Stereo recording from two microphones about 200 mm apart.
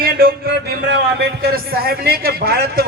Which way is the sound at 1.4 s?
50° right (ahead or behind).